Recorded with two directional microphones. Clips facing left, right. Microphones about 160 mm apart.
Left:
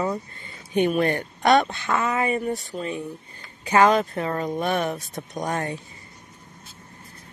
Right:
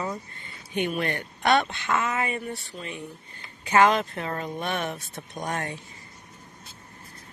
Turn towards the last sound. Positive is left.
turn(degrees=35)  # may be behind; listen again after turning